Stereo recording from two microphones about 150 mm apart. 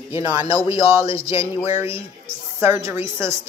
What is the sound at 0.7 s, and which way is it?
Speech, 40° left (ahead or behind).